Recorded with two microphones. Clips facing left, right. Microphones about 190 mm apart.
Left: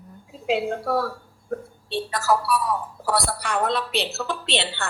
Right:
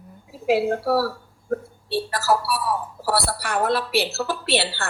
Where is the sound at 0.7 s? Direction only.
30° right (ahead or behind).